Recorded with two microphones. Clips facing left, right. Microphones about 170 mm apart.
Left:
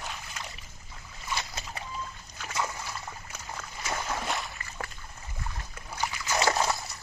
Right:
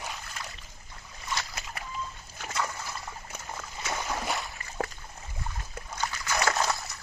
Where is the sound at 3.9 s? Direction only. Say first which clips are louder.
Even; centre (ahead or behind).